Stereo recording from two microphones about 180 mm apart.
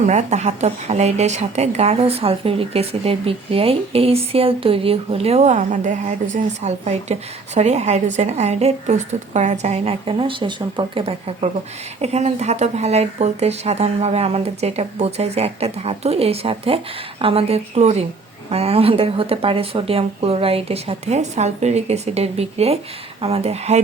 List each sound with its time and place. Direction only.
0.0 s a woman's voice: 40° right (ahead or behind)